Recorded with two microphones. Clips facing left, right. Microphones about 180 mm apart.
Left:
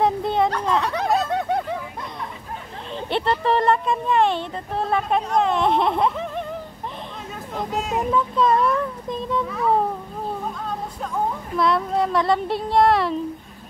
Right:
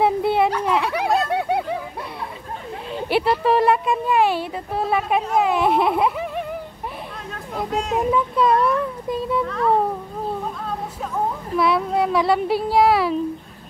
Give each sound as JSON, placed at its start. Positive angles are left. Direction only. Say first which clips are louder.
{"t": 0.0, "sound": "a sound", "louder": "right 2 dB", "side_deg": -10}
{"t": 2.9, "sound": "a child's voice", "louder": "right 3 dB", "side_deg": -10}
{"t": 9.5, "sound": "speech", "louder": "right 1 dB", "side_deg": 5}
{"t": 11.1, "sound": "speech", "louder": "right 1 dB", "side_deg": -5}